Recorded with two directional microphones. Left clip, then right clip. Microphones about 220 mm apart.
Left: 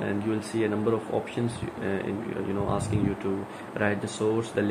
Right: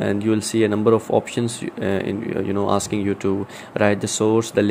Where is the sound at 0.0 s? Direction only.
25° right (ahead or behind).